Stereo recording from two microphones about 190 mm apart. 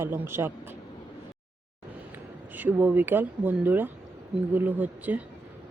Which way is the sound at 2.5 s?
10° right (ahead or behind).